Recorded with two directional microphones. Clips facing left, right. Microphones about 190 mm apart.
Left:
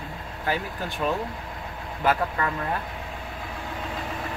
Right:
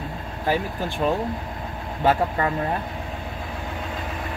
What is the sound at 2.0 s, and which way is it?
Speech, 30° right (ahead or behind).